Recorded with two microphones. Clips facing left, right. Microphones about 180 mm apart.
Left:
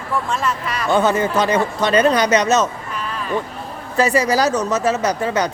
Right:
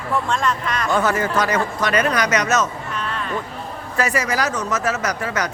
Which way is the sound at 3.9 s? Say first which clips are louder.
Left 5 dB; 30° left (ahead or behind).